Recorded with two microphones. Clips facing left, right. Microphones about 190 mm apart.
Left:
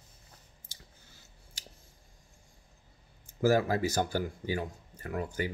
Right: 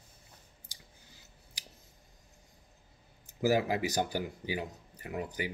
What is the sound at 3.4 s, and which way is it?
Speech, 15° right (ahead or behind).